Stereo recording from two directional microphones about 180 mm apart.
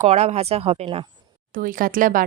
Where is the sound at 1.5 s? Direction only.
50° right (ahead or behind).